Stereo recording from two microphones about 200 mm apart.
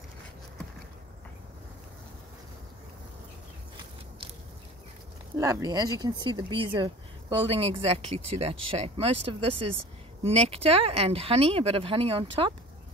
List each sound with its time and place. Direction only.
5.4 s speech: 20° right (ahead or behind)